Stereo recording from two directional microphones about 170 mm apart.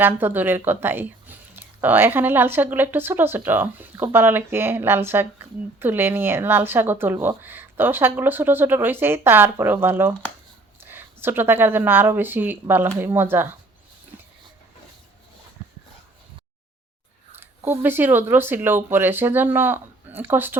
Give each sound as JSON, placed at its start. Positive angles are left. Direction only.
{"t": 0.0, "sound": "speech", "side_deg": -10}
{"t": 17.4, "sound": "speech", "side_deg": -15}